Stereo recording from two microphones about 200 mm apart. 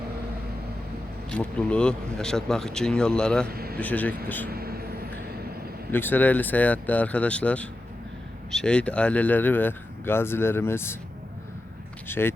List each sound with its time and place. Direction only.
1.3 s speech: 5° left (ahead or behind)
3.4 s a man's voice: 50° right (ahead or behind)
3.8 s speech: 10° left (ahead or behind)
4.4 s vehicle: 50° right (ahead or behind)
5.9 s speech: 10° left (ahead or behind)
12.0 s speech: 10° left (ahead or behind)